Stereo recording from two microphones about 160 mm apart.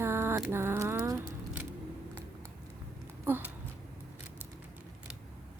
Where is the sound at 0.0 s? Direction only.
15° right (ahead or behind).